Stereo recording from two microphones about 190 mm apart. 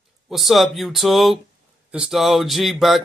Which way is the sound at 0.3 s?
Centre (ahead or behind).